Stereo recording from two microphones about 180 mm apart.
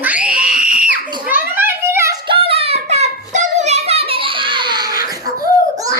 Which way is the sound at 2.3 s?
30° right (ahead or behind).